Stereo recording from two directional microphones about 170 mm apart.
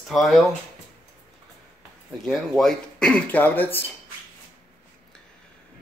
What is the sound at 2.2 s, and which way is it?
Speech, centre (ahead or behind).